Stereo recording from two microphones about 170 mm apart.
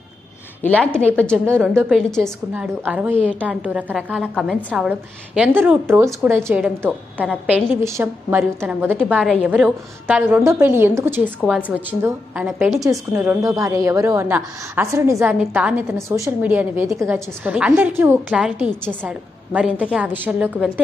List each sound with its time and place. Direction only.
0.6 s a woman's voice: 10° left (ahead or behind)
2.7 s a woman's voice: 10° right (ahead or behind)